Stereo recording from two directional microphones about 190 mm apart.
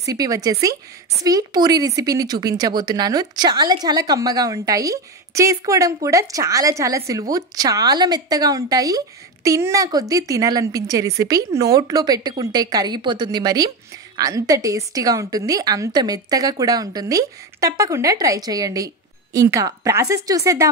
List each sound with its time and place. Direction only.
0.0 s a woman's voice: 20° right (ahead or behind)